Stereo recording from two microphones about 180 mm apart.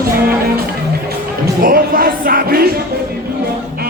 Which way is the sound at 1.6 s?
55° right (ahead or behind).